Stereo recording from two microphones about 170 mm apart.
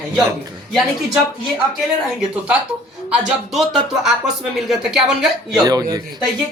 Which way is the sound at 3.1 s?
5° right (ahead or behind).